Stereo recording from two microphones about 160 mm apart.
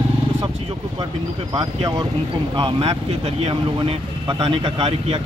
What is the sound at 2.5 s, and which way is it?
Speech, 35° right (ahead or behind).